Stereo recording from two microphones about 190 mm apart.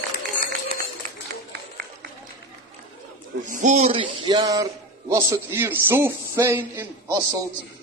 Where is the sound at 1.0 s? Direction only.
45° right (ahead or behind).